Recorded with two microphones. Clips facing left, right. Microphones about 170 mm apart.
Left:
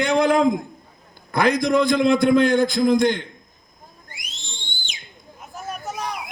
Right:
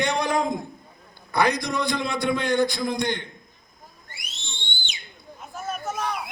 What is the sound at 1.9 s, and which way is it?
Speech, 50° left (ahead or behind).